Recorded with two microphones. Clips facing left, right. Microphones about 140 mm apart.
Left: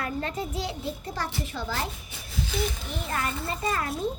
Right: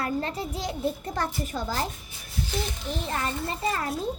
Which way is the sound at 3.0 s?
30° right (ahead or behind).